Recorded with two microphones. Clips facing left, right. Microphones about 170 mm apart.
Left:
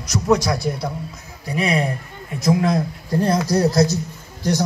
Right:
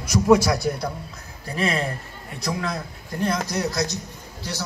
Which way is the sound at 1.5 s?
10° left (ahead or behind).